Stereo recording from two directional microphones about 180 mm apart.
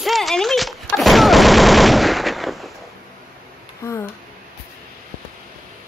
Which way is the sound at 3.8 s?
15° left (ahead or behind).